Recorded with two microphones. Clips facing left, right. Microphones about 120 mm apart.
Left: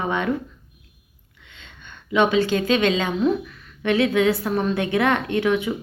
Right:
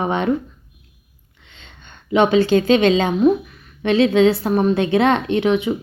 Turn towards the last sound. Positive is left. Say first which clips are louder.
# right 3 dB
turn(degrees=-20)  # may be behind; listen again after turning